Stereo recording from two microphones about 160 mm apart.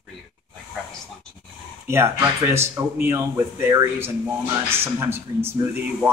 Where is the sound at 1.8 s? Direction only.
15° right (ahead or behind).